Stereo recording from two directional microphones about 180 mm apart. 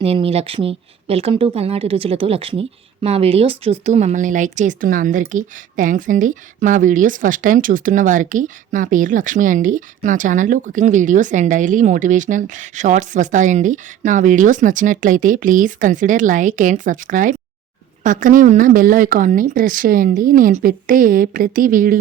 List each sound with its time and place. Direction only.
0.0 s speech: 35° right (ahead or behind); by 21.9 s 50° right (ahead or behind)